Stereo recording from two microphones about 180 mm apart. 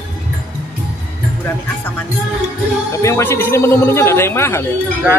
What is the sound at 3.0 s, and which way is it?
Speech, 15° left (ahead or behind).